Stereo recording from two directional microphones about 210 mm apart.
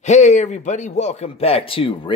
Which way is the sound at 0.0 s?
35° left (ahead or behind).